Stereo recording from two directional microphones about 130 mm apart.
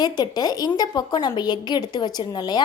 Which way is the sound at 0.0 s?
30° left (ahead or behind).